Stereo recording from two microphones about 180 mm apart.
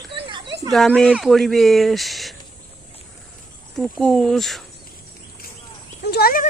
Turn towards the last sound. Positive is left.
turn(degrees=55)  # may be behind; listen again after turning